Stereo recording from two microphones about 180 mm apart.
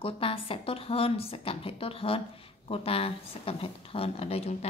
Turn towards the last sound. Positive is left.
turn(degrees=35)  # may be behind; listen again after turning